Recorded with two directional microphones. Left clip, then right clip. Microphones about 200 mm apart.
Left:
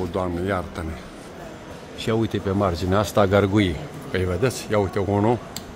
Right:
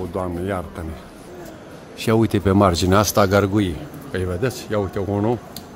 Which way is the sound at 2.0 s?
15° right (ahead or behind).